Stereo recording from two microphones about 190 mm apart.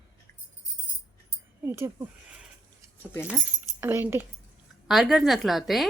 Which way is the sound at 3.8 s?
10° right (ahead or behind).